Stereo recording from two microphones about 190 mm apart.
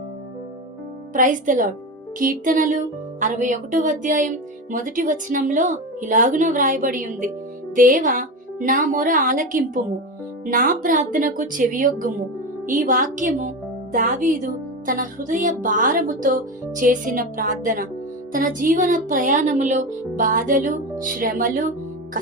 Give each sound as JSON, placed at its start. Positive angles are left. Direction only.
{"t": 1.1, "sound": "speech", "side_deg": -45}